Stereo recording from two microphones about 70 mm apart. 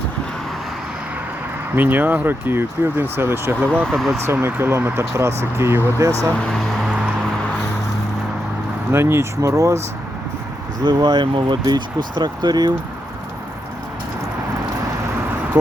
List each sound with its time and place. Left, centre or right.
1.7 s speech: right
3.7 s speech: centre
3.9 s speech: centre
4.2 s speech: right
8.9 s speech: right
10.8 s speech: right